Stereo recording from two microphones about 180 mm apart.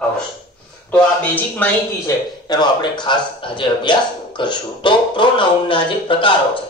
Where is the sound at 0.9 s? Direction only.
10° left (ahead or behind).